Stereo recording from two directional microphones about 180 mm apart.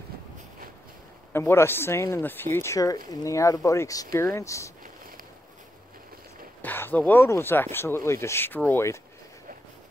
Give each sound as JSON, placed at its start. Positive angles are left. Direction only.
{"t": 1.3, "sound": "speech", "side_deg": 15}
{"t": 6.6, "sound": "speech", "side_deg": 10}